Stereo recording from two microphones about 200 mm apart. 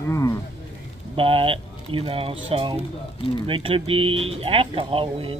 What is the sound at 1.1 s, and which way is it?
Speech, 25° right (ahead or behind).